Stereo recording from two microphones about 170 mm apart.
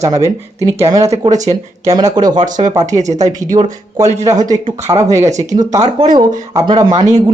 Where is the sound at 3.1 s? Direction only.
45° right (ahead or behind).